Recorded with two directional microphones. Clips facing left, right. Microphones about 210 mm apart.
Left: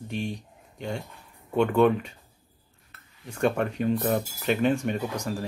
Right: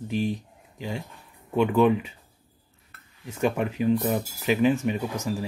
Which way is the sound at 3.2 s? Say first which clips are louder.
Even; 5° right (ahead or behind).